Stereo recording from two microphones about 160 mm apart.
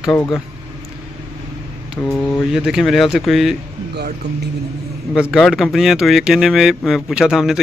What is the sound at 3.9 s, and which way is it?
Speech, 90° right.